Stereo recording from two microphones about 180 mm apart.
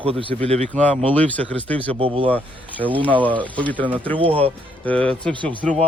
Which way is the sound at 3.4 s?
10° left (ahead or behind).